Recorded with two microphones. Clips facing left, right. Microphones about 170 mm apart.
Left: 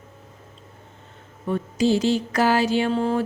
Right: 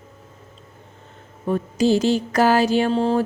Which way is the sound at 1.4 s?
40° right (ahead or behind).